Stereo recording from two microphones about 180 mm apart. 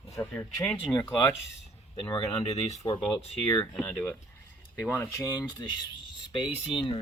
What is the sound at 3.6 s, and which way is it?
Speech, 10° left (ahead or behind).